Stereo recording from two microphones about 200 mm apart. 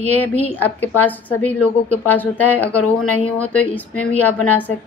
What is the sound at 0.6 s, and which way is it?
Speech, 10° left (ahead or behind).